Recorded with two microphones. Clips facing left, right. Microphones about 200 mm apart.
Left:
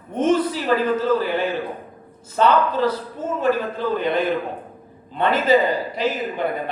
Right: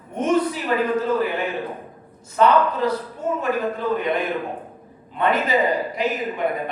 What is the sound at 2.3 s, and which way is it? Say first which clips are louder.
A man's voice: even; 30° left (ahead or behind).